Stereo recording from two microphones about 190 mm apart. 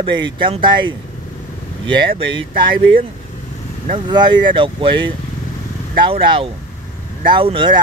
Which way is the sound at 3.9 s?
25° right (ahead or behind).